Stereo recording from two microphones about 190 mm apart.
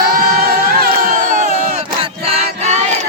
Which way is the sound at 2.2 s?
35° right (ahead or behind).